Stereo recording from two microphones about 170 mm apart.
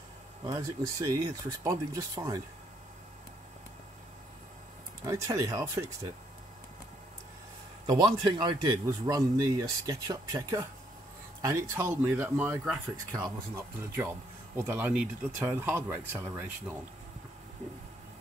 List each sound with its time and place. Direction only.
0.4 s a man's voice: 20° right (ahead or behind)
5.0 s a man's voice: 20° right (ahead or behind)
7.8 s a man's voice: 25° right (ahead or behind)